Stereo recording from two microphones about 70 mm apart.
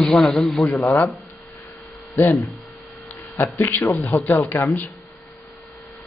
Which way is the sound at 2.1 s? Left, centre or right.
Left.